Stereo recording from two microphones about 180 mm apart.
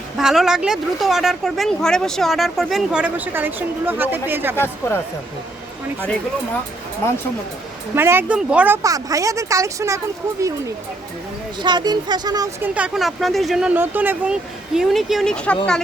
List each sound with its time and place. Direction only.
0.2 s speech: 5° right (ahead or behind)
4.5 s speech: 10° left (ahead or behind)
7.9 s speech: 10° right (ahead or behind)
11.6 s speech: 25° right (ahead or behind); by 15.8 s 5° left (ahead or behind)